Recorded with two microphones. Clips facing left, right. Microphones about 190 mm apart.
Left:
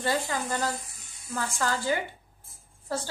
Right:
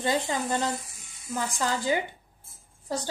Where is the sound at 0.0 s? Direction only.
20° right (ahead or behind).